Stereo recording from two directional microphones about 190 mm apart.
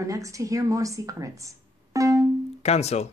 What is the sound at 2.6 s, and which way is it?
Speech, 35° left (ahead or behind).